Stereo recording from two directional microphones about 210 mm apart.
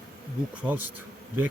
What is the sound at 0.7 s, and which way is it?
Speech, 10° right (ahead or behind).